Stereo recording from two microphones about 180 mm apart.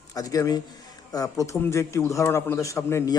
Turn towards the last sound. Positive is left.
turn(degrees=15)  # may be behind; listen again after turning